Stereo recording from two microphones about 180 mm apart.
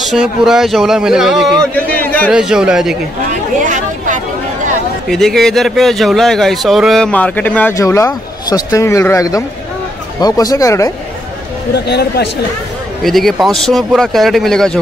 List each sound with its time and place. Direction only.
0.0 s speech: centre (ahead or behind)
2.0 s a sound: 10° left (ahead or behind)
2.3 s speech: 5° right (ahead or behind)
3.6 s chatter: 45° right (ahead or behind)
5.0 s speech: centre (ahead or behind); by 10.9 s 15° left (ahead or behind)
11.7 s speech: 70° left (ahead or behind)
13.0 s speech: centre (ahead or behind)